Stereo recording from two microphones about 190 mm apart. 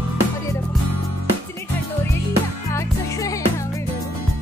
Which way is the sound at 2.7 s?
15° left (ahead or behind).